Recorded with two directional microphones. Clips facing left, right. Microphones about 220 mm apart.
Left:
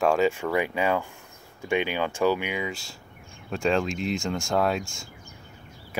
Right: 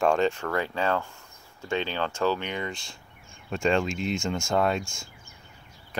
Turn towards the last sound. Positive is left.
turn(degrees=20)  # may be behind; listen again after turning